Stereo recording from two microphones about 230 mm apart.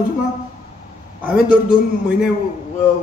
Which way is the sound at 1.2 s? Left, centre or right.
Centre.